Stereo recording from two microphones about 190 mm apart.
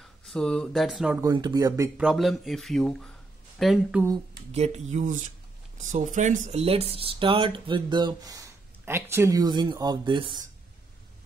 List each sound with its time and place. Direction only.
0.0 s speech: 5° left (ahead or behind)
1.2 s speech: 20° right (ahead or behind)
2.0 s speech: centre (ahead or behind)
4.5 s speech: 35° right (ahead or behind)